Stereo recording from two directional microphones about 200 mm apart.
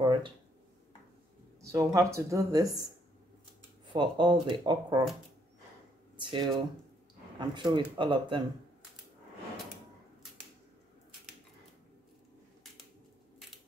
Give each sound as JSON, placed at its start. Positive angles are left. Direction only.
{"t": 0.0, "sound": "a sound", "side_deg": -25}
{"t": 1.6, "sound": "speech", "side_deg": -15}
{"t": 3.8, "sound": "speech", "side_deg": -25}
{"t": 6.1, "sound": "speech", "side_deg": -25}